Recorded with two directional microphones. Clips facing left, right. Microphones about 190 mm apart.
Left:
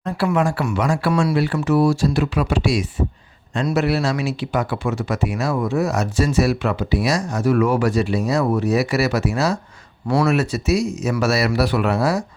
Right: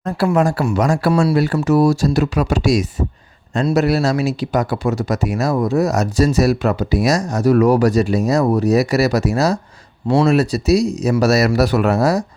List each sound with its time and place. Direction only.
0.3 s a man's voice: 40° right (ahead or behind)